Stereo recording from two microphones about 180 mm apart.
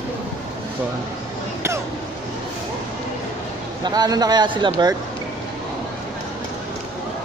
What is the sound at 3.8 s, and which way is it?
Speech, 20° right (ahead or behind).